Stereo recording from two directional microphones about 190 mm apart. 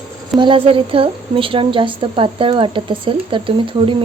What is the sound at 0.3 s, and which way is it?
Speech, 25° right (ahead or behind).